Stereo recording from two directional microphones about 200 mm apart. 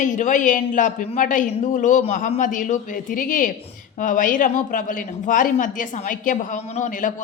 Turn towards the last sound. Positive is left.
turn(degrees=40)  # may be behind; listen again after turning